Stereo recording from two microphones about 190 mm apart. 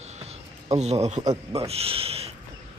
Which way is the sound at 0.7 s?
35° right (ahead or behind).